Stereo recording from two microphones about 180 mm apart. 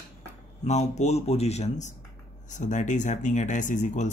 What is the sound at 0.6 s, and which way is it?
Speech, 40° left (ahead or behind).